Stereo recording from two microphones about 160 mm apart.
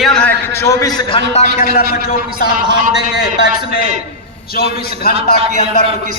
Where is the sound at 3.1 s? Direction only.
85° left; by 6.1 s 70° left (ahead or behind).